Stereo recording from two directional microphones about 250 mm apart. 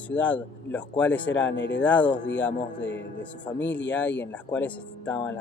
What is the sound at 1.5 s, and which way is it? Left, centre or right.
Speech, left.